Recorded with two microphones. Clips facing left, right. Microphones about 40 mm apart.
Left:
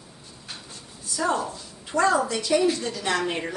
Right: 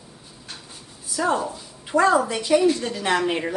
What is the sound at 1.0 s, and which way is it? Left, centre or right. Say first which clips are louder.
A woman's voice: right 2 dB; centre.